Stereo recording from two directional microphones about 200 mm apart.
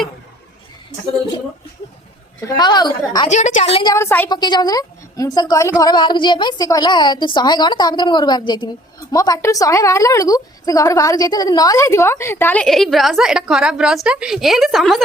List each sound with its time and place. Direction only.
2.4 s a woman's voice: 20° left (ahead or behind)
3.2 s a woman's voice: 35° left (ahead or behind)
3.8 s a woman's voice: 15° left (ahead or behind)